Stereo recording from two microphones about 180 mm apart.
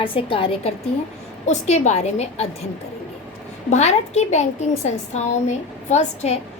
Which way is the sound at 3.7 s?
40° left (ahead or behind).